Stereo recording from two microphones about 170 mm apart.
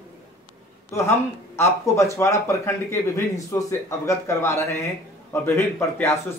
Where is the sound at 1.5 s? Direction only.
15° left (ahead or behind).